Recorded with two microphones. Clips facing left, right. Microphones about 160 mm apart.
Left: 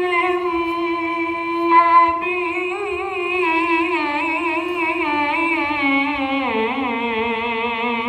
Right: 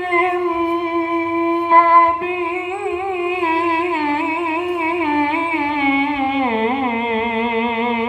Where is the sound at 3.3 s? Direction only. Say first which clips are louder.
Left 1 dB; 40° right (ahead or behind).